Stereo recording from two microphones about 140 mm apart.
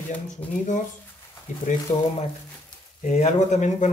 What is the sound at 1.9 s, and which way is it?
Speech, 60° left (ahead or behind).